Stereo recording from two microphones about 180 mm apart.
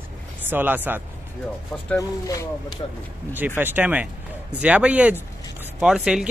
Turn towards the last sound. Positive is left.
turn(degrees=-5)  # may be behind; listen again after turning